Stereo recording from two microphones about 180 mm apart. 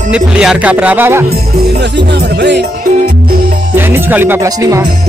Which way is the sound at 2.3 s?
75° right (ahead or behind).